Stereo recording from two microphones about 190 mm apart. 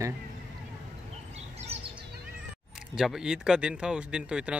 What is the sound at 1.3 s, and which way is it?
Bird, 35° right (ahead or behind).